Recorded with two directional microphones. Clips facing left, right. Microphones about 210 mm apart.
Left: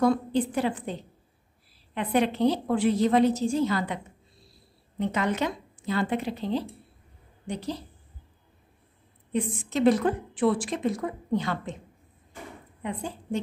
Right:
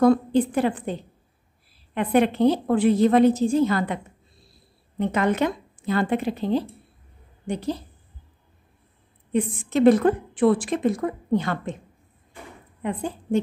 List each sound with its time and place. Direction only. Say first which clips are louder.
0.0 s a woman's voice: right 5 dB; 55° right (ahead or behind)
2.0 s a woman's voice: right 5 dB; 55° right (ahead or behind)
9.3 s a woman's voice: right 5 dB; 55° right (ahead or behind)
12.8 s a woman's voice: right 5 dB; 55° right (ahead or behind)